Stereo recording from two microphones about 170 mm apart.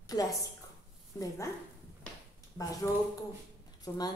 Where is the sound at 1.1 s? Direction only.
20° left (ahead or behind).